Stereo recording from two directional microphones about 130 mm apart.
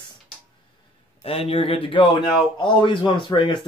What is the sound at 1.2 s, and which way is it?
Speech, 50° left (ahead or behind).